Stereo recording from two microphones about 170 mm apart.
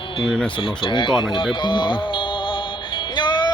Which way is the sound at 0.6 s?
30° left (ahead or behind).